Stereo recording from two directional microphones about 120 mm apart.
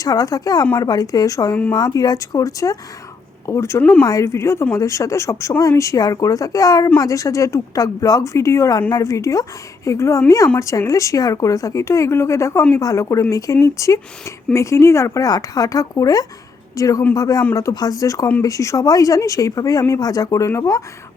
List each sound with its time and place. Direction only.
0.0 s a man's voice: 30° left (ahead or behind)